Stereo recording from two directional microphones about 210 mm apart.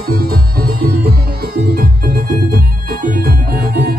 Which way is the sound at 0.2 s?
45° right (ahead or behind).